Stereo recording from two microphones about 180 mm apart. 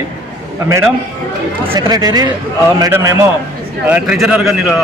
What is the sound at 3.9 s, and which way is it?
Speech, 5° right (ahead or behind).